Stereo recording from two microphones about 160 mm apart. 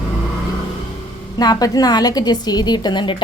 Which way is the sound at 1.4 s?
25° left (ahead or behind).